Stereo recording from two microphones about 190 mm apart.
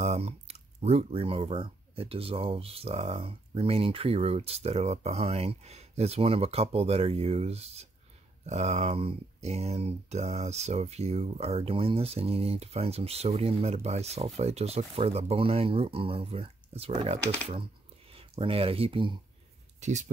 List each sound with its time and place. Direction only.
0.0 s speech: 35° right (ahead or behind)
19.8 s speech: 40° right (ahead or behind)